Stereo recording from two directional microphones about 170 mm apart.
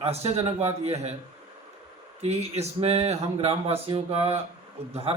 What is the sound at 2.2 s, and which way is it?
Speech, 40° right (ahead or behind).